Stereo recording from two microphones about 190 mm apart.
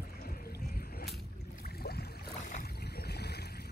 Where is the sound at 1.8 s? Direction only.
55° left (ahead or behind).